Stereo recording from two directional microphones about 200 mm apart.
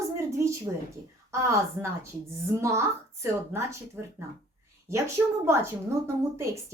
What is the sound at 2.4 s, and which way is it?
Speech, 15° right (ahead or behind).